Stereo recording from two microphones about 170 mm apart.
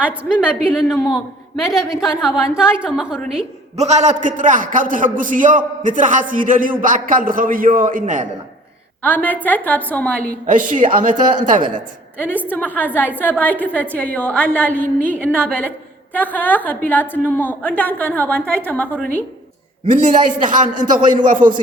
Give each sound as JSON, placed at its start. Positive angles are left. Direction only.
{"t": 0.0, "sound": "a woman's voice", "side_deg": -5}
{"t": 3.8, "sound": "a man's voice", "side_deg": -40}
{"t": 9.0, "sound": "a woman's voice", "side_deg": 10}
{"t": 10.4, "sound": "a man's voice", "side_deg": -50}
{"t": 12.5, "sound": "a woman's voice", "side_deg": 10}
{"t": 19.9, "sound": "a man's voice", "side_deg": -50}